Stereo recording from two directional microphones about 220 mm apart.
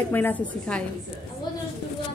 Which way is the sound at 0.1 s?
10° left (ahead or behind).